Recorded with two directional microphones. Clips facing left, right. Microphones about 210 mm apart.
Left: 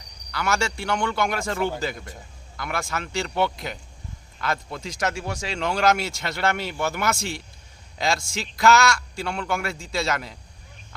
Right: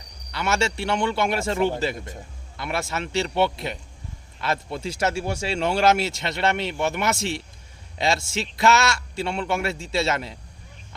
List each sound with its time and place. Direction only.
0.3 s a man's voice: 25° right (ahead or behind)
6.0 s speech: centre (ahead or behind)
6.2 s a man's voice: 20° right (ahead or behind)
7.2 s speech: centre (ahead or behind)
7.9 s a man's voice: 25° right (ahead or behind)